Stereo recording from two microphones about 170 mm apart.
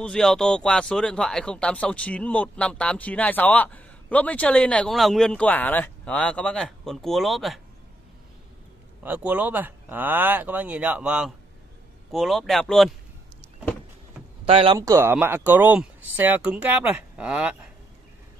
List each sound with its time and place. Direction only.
0.0 s speech: 5° left (ahead or behind)
9.0 s speech: 10° right (ahead or behind)
14.4 s speech: 35° right (ahead or behind)
14.8 s speech: 15° right (ahead or behind)